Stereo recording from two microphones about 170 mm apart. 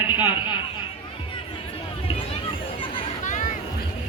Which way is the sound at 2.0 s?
30° left (ahead or behind).